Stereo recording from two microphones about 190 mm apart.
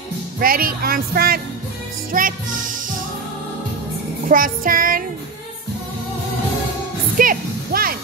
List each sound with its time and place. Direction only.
0.4 s speech: 50° right (ahead or behind)
4.3 s speech: 45° right (ahead or behind)
7.2 s speech: 50° right (ahead or behind)